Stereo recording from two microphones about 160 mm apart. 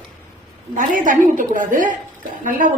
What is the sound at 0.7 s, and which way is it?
A woman's voice, 55° right (ahead or behind).